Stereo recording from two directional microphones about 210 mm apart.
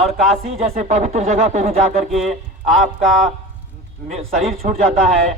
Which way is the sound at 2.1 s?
Centre (ahead or behind).